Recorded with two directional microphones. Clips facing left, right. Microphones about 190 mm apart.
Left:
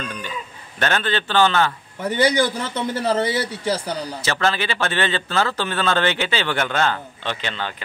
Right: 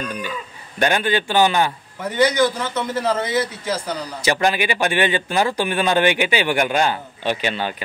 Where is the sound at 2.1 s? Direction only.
30° left (ahead or behind).